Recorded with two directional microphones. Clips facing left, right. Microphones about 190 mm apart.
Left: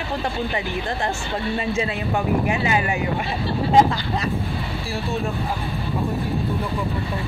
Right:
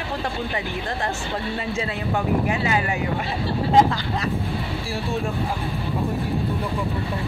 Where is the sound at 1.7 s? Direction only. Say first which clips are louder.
Left 2 dB; 15° left (ahead or behind).